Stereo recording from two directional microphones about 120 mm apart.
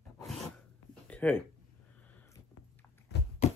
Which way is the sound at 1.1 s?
15° left (ahead or behind).